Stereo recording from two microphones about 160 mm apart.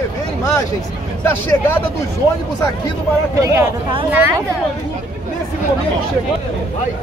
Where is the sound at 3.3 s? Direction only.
20° right (ahead or behind).